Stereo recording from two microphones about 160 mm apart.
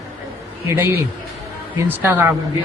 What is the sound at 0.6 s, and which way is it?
Speech, 15° right (ahead or behind).